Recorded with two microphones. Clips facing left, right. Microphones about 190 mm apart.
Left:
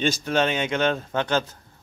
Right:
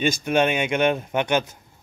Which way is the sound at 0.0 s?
15° right (ahead or behind).